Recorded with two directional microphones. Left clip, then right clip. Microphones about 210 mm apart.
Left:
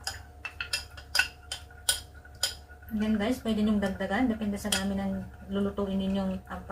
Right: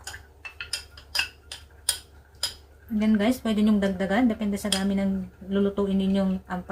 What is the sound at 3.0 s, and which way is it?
Speech, 50° right (ahead or behind).